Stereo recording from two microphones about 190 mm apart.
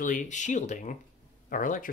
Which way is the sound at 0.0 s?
40° left (ahead or behind).